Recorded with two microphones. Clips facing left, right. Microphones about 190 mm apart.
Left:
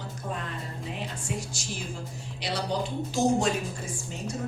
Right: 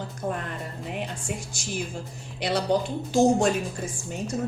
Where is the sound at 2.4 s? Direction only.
50° right (ahead or behind).